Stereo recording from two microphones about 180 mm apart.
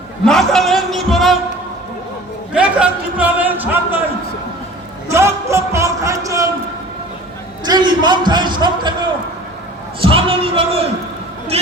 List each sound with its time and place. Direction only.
0.3 s a man's voice: centre (ahead or behind)
2.5 s speech: 5° right (ahead or behind)
5.0 s a sound: 15° right (ahead or behind)
7.6 s a man's voice: 25° right (ahead or behind)